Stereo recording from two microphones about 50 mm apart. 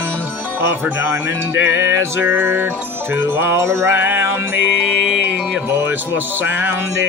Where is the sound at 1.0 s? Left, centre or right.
Right.